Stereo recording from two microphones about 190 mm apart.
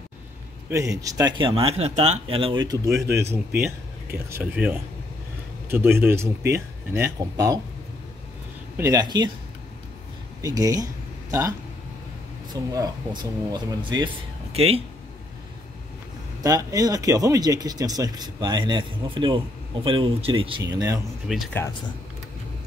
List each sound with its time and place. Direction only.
0.7 s speech: 15° right (ahead or behind)
2.9 s speech: 60° right (ahead or behind)
3.6 s speech: 15° right (ahead or behind)
8.7 s speech: 20° right (ahead or behind)
10.4 s speech: 20° right (ahead or behind)
12.7 s speech: 20° right (ahead or behind)
16.4 s speech: 20° right (ahead or behind)
21.3 s speech: centre (ahead or behind)